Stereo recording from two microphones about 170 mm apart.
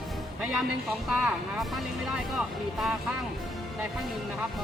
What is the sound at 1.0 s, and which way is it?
Speech, 5° right (ahead or behind).